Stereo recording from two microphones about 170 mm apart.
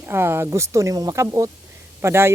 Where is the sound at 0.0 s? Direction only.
15° right (ahead or behind).